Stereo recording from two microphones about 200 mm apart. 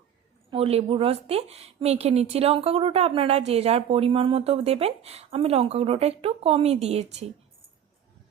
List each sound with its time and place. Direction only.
0.5 s a woman's voice: 30° right (ahead or behind)